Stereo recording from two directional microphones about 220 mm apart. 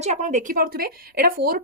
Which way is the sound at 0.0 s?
30° right (ahead or behind).